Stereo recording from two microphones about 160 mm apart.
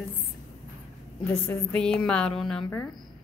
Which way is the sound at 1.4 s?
10° left (ahead or behind).